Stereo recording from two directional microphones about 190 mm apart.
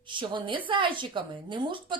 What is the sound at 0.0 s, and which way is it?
A woman's voice, 25° right (ahead or behind).